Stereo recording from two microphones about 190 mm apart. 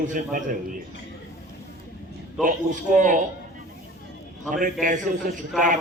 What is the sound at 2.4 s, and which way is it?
Speech, 45° right (ahead or behind).